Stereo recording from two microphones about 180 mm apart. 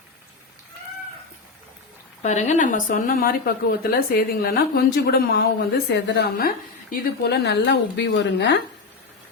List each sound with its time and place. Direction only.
2.2 s a woman's voice: 40° left (ahead or behind); by 8.6 s 70° left (ahead or behind)